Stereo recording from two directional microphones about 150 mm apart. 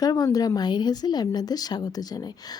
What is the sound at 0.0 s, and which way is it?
Speech, 25° left (ahead or behind).